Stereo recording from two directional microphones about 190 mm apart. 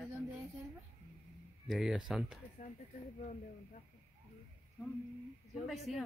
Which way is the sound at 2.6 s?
35° left (ahead or behind).